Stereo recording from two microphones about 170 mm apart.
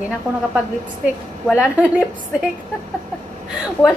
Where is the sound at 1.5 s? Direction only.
5° right (ahead or behind).